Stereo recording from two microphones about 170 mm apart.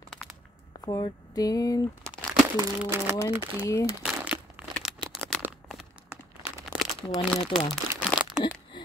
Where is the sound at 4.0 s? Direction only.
5° right (ahead or behind).